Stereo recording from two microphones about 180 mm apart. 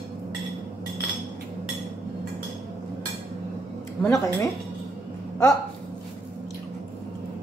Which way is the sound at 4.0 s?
15° left (ahead or behind).